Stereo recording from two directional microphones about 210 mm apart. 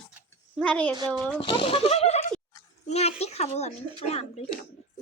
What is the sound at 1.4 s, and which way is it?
Speech, 25° left (ahead or behind).